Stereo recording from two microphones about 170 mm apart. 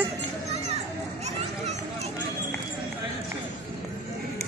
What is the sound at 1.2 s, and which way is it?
Children playing, 40° right (ahead or behind).